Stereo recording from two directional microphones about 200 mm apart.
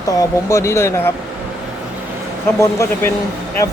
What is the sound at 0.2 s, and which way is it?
Speech, 15° left (ahead or behind).